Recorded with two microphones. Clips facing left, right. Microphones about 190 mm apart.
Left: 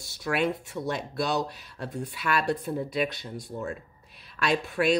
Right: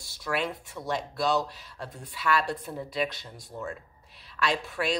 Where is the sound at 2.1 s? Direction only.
55° left (ahead or behind).